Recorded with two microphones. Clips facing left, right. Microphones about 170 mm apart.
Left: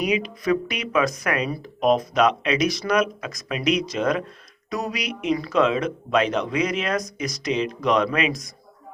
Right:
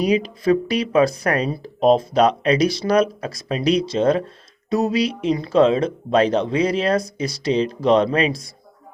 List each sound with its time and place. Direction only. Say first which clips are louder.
0.0 s speech: right 5 dB; 35° right (ahead or behind)